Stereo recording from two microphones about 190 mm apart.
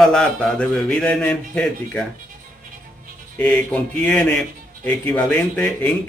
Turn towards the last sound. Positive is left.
turn(degrees=10)  # may be behind; listen again after turning